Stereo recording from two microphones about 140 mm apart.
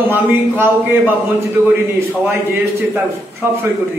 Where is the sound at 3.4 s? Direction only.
15° right (ahead or behind).